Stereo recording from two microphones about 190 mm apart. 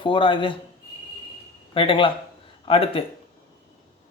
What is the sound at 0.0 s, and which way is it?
Speech, 25° left (ahead or behind).